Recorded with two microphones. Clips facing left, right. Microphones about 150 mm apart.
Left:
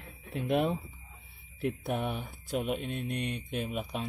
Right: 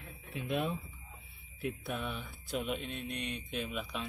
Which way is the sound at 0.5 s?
60° left (ahead or behind).